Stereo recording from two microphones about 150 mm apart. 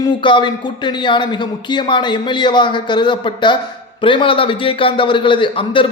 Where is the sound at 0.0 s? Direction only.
30° left (ahead or behind).